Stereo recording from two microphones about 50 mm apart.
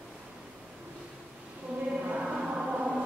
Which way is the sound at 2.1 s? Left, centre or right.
Centre.